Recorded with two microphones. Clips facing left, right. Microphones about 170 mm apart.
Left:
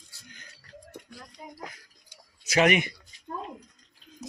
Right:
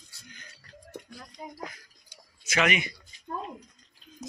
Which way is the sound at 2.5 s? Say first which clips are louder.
Left 5 dB; 45° left (ahead or behind).